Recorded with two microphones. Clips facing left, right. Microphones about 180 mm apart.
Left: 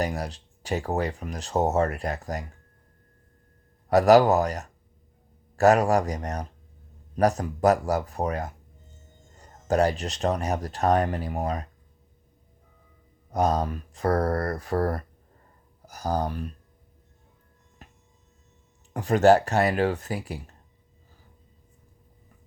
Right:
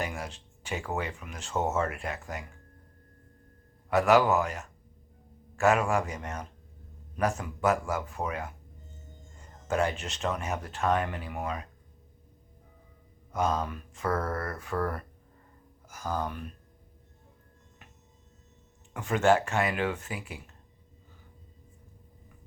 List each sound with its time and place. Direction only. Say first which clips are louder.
0.0 s speech: left 6 dB; 40° left (ahead or behind)
3.8 s speech: left 6 dB; 40° left (ahead or behind)
13.3 s speech: left 5 dB; 40° left (ahead or behind)
17.8 s a sound: left 6 dB; 35° left (ahead or behind)
18.9 s speech: left 6 dB; 35° left (ahead or behind)